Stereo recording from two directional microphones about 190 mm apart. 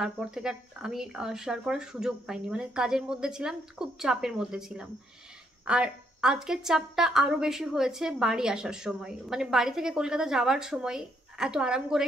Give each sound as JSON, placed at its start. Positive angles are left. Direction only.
{"t": 0.0, "sound": "a woman's voice", "side_deg": -5}